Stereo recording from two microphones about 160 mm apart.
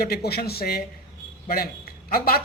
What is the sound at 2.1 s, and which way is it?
Speech, 70° left (ahead or behind).